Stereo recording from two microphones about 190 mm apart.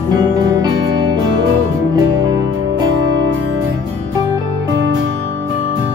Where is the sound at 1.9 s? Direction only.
20° right (ahead or behind).